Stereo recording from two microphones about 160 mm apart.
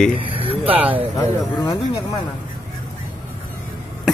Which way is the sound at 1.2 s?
25° left (ahead or behind).